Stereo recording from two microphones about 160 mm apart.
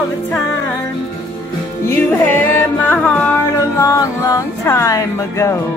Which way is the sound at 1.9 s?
15° left (ahead or behind).